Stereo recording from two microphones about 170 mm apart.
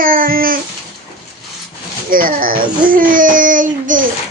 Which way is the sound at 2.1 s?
55° right (ahead or behind).